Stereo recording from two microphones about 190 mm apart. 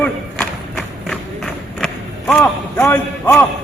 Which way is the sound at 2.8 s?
10° left (ahead or behind).